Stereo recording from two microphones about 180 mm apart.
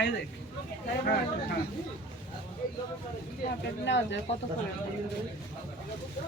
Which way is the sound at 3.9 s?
80° left.